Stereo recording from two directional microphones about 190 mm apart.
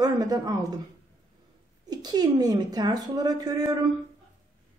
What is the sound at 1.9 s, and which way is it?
A woman's voice, 20° right (ahead or behind).